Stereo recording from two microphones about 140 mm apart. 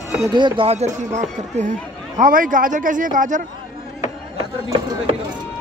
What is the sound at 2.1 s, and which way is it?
Speech, 75° right (ahead or behind).